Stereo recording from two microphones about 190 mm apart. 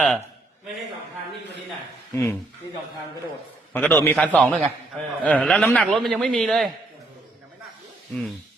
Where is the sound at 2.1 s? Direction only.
15° left (ahead or behind).